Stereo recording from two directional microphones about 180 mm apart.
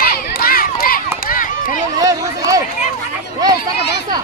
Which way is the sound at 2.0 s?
20° right (ahead or behind).